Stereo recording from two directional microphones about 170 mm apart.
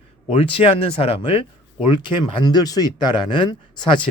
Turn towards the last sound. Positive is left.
turn(degrees=25)  # may be behind; listen again after turning